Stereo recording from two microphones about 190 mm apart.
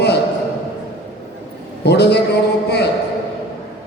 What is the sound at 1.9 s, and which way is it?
Speech, 60° left (ahead or behind).